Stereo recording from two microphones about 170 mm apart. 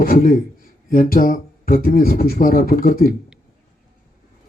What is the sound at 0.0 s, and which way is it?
Speech, 60° left (ahead or behind).